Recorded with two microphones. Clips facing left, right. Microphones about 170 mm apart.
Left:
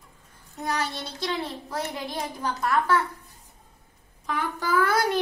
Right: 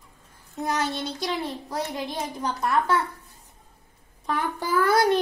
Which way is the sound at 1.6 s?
20° right (ahead or behind).